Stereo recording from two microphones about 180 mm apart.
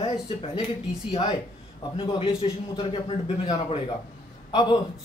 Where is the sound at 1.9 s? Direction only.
30° left (ahead or behind).